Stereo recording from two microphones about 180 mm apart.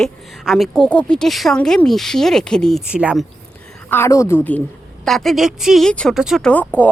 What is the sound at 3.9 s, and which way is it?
Speech, 15° left (ahead or behind).